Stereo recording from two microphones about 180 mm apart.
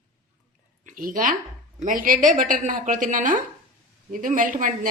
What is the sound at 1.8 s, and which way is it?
Speech, 50° right (ahead or behind).